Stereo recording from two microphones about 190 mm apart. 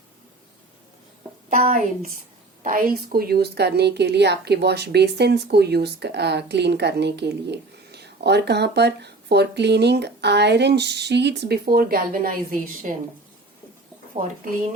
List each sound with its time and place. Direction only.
2.6 s a woman's voice: 50° right (ahead or behind)
14.2 s speech: 40° right (ahead or behind)